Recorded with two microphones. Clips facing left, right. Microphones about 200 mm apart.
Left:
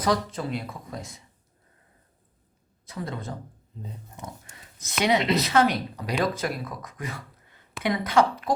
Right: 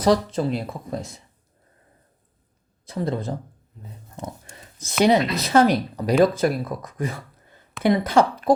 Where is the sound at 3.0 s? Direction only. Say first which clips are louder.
Right 8 dB; 30° right (ahead or behind).